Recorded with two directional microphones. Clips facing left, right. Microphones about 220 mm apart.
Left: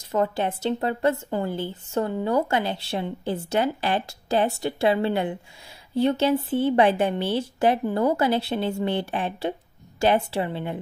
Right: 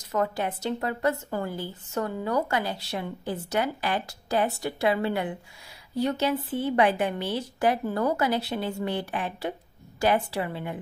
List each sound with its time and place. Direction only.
0.1 s a woman's voice: 30° left (ahead or behind)